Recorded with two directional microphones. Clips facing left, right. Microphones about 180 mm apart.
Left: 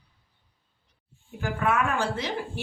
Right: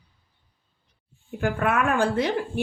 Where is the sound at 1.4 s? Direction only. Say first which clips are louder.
Right 2 dB; 55° right (ahead or behind).